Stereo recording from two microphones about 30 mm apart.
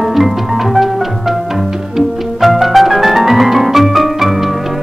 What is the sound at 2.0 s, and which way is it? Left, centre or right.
Music, centre.